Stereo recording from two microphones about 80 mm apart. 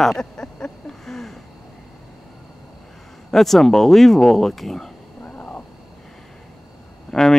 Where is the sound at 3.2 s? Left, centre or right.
Centre.